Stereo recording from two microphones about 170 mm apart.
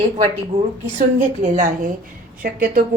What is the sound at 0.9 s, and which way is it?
Speech, 50° right (ahead or behind).